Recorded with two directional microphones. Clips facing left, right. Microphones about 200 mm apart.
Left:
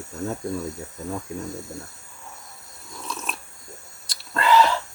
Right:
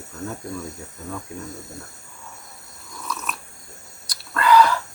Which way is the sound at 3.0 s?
30° left (ahead or behind).